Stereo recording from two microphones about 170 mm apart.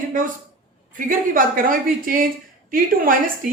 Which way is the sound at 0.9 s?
55° right (ahead or behind).